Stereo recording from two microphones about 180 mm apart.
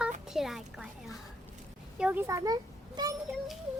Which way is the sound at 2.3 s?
15° right (ahead or behind).